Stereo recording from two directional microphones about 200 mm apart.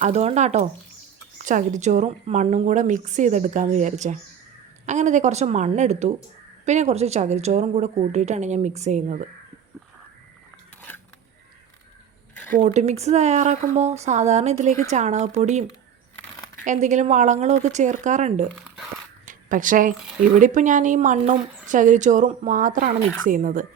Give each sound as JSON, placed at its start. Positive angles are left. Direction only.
{"t": 0.0, "sound": "a woman's voice", "side_deg": -30}
{"t": 12.5, "sound": "a woman's voice", "side_deg": -35}
{"t": 19.2, "sound": "zipper", "side_deg": -40}
{"t": 20.3, "sound": "a woman's voice", "side_deg": -40}